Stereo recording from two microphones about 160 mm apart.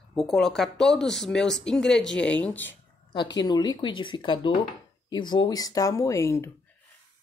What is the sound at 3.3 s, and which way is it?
Speech, 25° left (ahead or behind).